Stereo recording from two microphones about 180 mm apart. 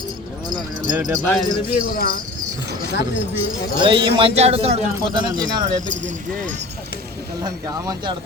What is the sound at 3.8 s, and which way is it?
Speech, 30° right (ahead or behind).